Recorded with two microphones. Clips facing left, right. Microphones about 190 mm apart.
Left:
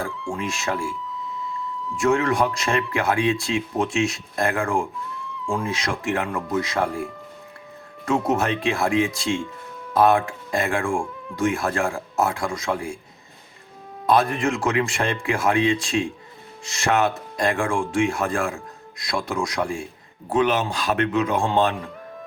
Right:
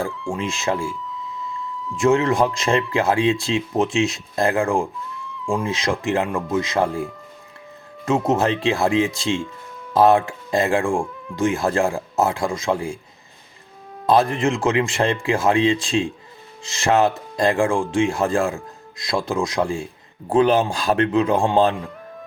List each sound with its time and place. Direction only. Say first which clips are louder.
0.1 s speech: right 2 dB; centre (ahead or behind)
0.3 s speech: right 3 dB; 25° right (ahead or behind)
2.0 s speech: right 3 dB; 25° right (ahead or behind)
8.0 s speech: right 3 dB; 25° right (ahead or behind)
14.1 s a man's voice: right 2 dB; 25° right (ahead or behind)